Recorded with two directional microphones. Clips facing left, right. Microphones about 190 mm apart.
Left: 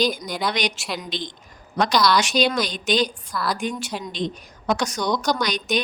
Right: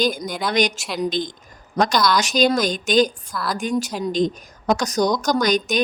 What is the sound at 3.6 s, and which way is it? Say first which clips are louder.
A woman's voice: right 5 dB; 40° right (ahead or behind).